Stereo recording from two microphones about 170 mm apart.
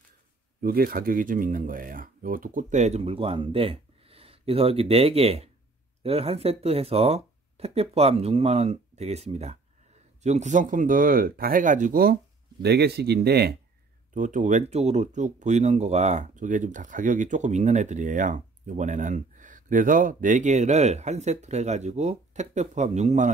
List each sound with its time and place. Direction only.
0.6 s speech: 60° right (ahead or behind)
12.6 s speech: 75° right (ahead or behind)
14.1 s speech: 50° right (ahead or behind)